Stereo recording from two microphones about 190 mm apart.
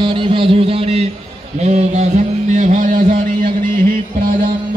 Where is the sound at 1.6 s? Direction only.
35° right (ahead or behind).